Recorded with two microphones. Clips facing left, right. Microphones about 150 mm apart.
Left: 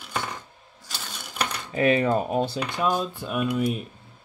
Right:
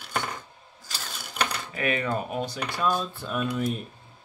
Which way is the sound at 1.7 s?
30° left (ahead or behind).